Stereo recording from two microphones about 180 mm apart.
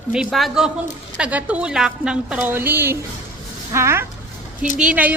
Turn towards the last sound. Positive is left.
turn(degrees=-10)  # may be behind; listen again after turning